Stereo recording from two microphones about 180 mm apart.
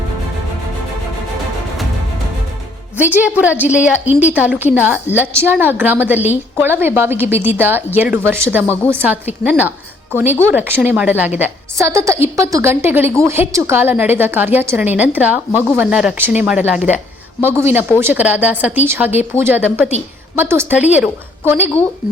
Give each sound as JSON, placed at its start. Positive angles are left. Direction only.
{"t": 3.0, "sound": "a woman's voice", "side_deg": -10}
{"t": 8.6, "sound": "a woman's voice", "side_deg": 10}
{"t": 8.9, "sound": "a woman's voice", "side_deg": -10}
{"t": 20.7, "sound": "a woman's voice", "side_deg": 40}
{"t": 21.0, "sound": "a woman's voice", "side_deg": -15}